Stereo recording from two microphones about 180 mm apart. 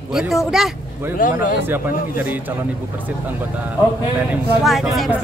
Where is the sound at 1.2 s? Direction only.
50° left (ahead or behind).